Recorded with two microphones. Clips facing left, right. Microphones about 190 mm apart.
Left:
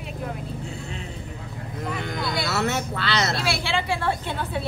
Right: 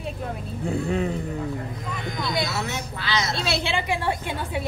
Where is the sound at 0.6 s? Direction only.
55° right (ahead or behind).